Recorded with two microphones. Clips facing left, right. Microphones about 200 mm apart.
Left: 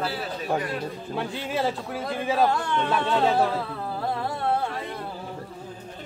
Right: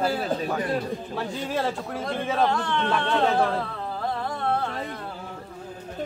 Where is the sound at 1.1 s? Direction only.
5° left (ahead or behind).